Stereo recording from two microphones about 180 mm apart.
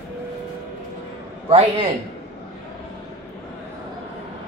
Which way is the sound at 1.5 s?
35° right (ahead or behind).